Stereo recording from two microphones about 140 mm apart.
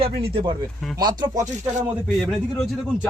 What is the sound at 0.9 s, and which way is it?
Speech, 30° right (ahead or behind).